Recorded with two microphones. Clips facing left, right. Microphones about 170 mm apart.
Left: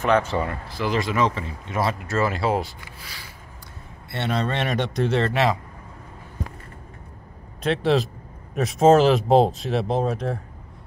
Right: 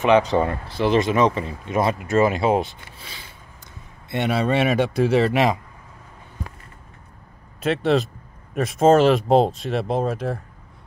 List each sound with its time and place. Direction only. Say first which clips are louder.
0.0 s speech: right 4 dB; 20° right (ahead or behind)
4.1 s a man's voice: right 4 dB; 10° right (ahead or behind)
7.6 s speech: right 1 dB; centre (ahead or behind)